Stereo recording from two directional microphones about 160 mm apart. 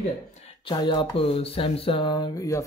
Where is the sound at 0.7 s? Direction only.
30° left (ahead or behind).